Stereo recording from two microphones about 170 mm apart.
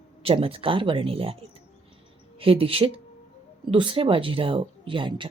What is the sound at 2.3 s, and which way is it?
Speech, 35° right (ahead or behind).